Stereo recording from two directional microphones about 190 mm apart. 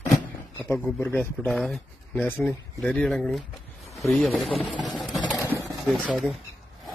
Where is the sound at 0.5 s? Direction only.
15° left (ahead or behind).